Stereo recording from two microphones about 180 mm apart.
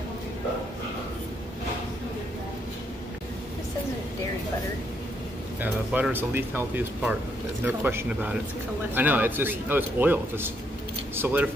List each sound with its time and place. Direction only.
5.6 s a man's voice: 10° right (ahead or behind)